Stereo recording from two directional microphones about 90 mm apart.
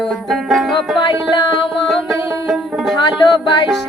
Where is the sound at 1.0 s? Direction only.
55° left (ahead or behind).